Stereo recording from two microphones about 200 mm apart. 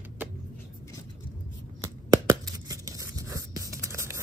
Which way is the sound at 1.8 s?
15° right (ahead or behind).